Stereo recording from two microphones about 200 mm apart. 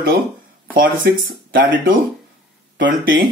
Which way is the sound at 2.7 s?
45° right (ahead or behind).